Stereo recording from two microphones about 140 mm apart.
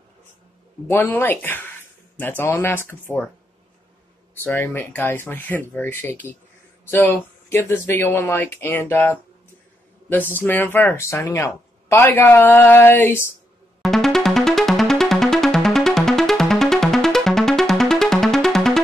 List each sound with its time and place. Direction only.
0.8 s speech: 15° left (ahead or behind)
4.4 s speech: 15° left (ahead or behind)
13.8 s music: centre (ahead or behind)